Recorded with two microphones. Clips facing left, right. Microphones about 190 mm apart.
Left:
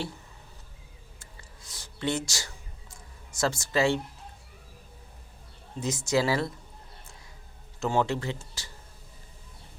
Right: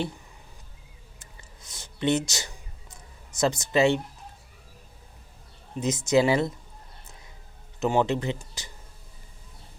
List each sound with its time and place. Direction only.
1.2 s a sound: 20° right (ahead or behind)
5.8 s speech: 20° right (ahead or behind)
7.8 s speech: 20° right (ahead or behind)